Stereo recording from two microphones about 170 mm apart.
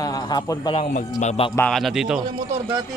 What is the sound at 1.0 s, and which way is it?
Speech, 45° left (ahead or behind).